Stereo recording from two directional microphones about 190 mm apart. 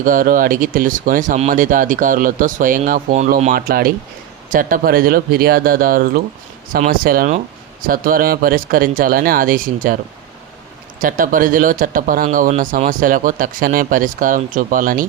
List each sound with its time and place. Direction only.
0.0 s speech: 45° right (ahead or behind)
11.0 s speech: 45° right (ahead or behind)